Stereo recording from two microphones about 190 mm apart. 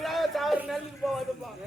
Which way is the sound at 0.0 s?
Centre (ahead or behind).